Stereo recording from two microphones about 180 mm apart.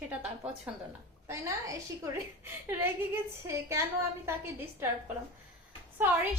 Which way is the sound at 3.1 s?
15° right (ahead or behind).